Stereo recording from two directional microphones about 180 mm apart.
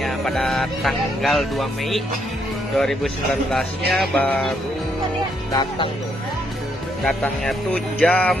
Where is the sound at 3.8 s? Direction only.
60° right (ahead or behind).